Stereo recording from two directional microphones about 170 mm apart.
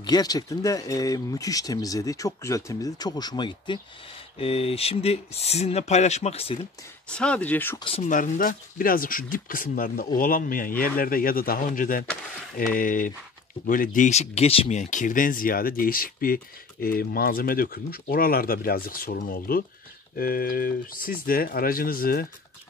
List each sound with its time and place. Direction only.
0.0 s speech: 25° left (ahead or behind)
7.1 s speech: 5° left (ahead or behind)
7.8 s speech: 35° left (ahead or behind)
8.1 s speech: 50° left (ahead or behind)